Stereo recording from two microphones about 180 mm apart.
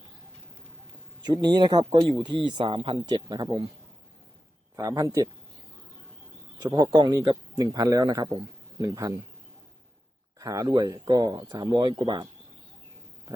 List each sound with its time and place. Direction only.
1.2 s speech: 25° right (ahead or behind)
4.8 s speech: 20° right (ahead or behind)
6.6 s speech: 25° right (ahead or behind)
10.3 s speech: 20° right (ahead or behind)